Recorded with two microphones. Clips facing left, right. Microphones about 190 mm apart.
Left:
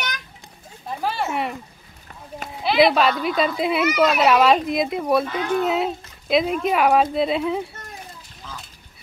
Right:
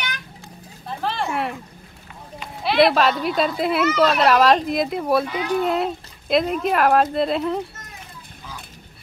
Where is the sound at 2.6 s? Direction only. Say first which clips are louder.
Even; centre (ahead or behind).